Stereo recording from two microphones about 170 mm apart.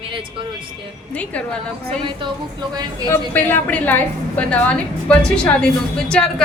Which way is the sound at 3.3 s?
10° left (ahead or behind).